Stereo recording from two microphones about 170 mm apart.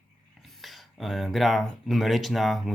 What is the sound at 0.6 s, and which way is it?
Speech, centre (ahead or behind).